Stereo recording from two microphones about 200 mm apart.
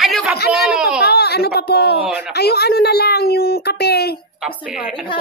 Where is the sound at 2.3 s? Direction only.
55° left (ahead or behind).